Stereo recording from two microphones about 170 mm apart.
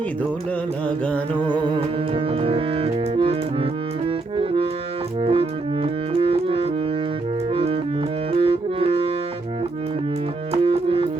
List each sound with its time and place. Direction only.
0.9 s music: 5° left (ahead or behind)
1.5 s music: 30° right (ahead or behind)
10.5 s music: 35° right (ahead or behind)